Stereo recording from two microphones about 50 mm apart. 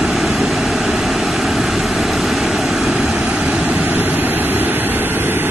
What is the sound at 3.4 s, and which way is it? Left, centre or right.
Vehicle, right.